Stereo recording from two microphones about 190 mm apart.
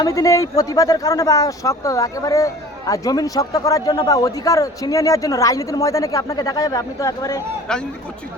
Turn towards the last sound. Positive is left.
turn(degrees=5)  # may be behind; listen again after turning